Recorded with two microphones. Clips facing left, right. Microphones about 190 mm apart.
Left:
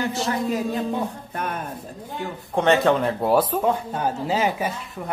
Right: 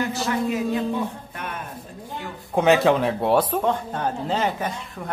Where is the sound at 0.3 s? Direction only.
35° left (ahead or behind).